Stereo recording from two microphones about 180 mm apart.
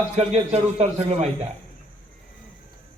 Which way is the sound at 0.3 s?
35° right (ahead or behind).